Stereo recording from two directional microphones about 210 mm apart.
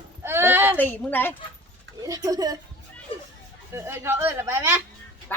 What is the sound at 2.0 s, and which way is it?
Speech, 15° right (ahead or behind).